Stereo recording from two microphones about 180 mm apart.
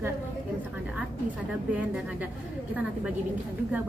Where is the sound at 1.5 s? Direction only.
5° right (ahead or behind).